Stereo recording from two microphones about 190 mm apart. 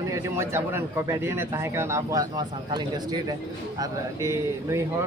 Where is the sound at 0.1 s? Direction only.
15° right (ahead or behind).